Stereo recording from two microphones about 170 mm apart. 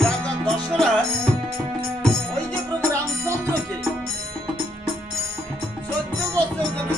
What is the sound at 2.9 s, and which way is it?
Music, 15° right (ahead or behind).